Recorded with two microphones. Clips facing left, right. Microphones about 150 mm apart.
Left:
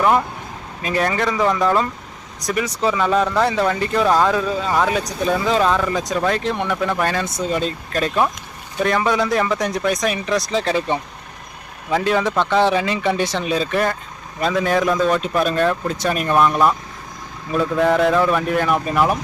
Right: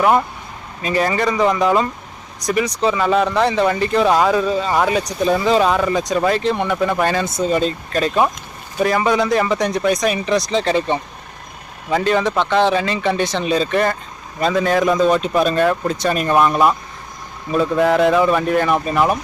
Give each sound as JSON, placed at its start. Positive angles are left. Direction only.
{"t": 0.8, "sound": "speech", "side_deg": 0}
{"t": 1.6, "sound": "speech", "side_deg": -10}
{"t": 2.4, "sound": "speech", "side_deg": 0}
{"t": 4.1, "sound": "speech", "side_deg": -10}
{"t": 5.6, "sound": "speech", "side_deg": -15}
{"t": 5.9, "sound": "speech", "side_deg": 0}
{"t": 14.8, "sound": "speech", "side_deg": -15}
{"t": 15.4, "sound": "speech", "side_deg": 0}
{"t": 16.3, "sound": "speech", "side_deg": -10}